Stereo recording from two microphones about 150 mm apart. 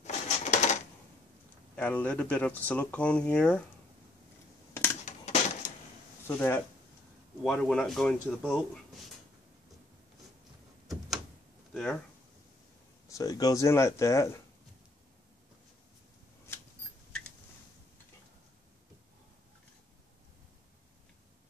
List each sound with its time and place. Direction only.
0.0 s typewriter: 50° left (ahead or behind)
1.8 s speech: 10° left (ahead or behind)
5.0 s a sound: 50° left (ahead or behind)
6.2 s speech: 15° left (ahead or behind)
11.7 s speech: 5° left (ahead or behind)
13.1 s speech: 25° left (ahead or behind)